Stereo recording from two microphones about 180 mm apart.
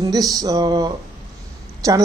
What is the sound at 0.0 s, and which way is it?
Speech, 20° right (ahead or behind).